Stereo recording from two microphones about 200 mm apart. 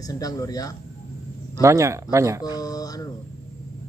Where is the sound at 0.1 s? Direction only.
15° left (ahead or behind).